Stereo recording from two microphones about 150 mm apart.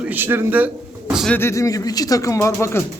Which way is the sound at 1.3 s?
15° left (ahead or behind).